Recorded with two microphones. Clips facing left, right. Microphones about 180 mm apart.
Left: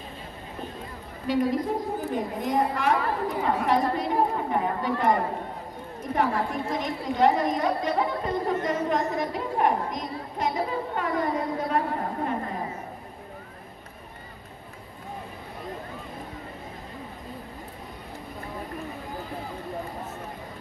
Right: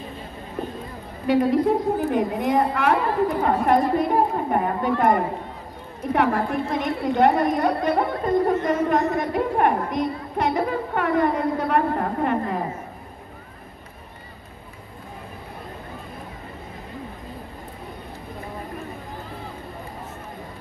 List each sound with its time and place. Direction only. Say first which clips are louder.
1.2 s a woman's voice: right 6 dB; 60° right (ahead or behind)
6.1 s a woman's voice: right 4 dB; 65° right (ahead or behind)